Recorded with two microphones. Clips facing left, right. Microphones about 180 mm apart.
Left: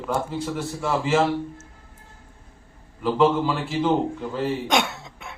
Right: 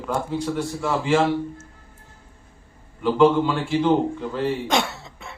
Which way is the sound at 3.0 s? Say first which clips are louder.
Right 3 dB; 5° left (ahead or behind).